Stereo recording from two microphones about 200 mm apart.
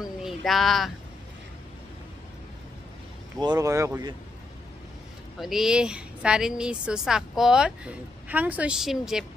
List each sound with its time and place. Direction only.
0.2 s speech: centre (ahead or behind)
3.3 s speech: 20° right (ahead or behind)
5.4 s a woman's voice: centre (ahead or behind)